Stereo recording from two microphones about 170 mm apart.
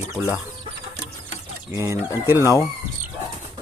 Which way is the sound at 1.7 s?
15° right (ahead or behind).